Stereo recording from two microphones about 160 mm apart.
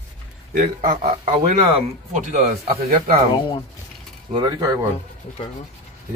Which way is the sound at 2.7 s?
65° right (ahead or behind).